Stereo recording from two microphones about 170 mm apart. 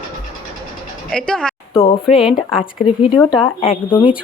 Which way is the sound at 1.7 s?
35° left (ahead or behind).